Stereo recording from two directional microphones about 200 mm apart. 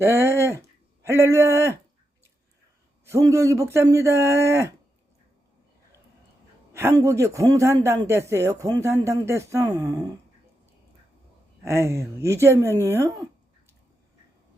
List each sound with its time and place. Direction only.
0.0 s speech: 15° right (ahead or behind)
3.1 s speech: 15° right (ahead or behind)
6.7 s speech: 15° right (ahead or behind)
11.6 s speech: 15° right (ahead or behind)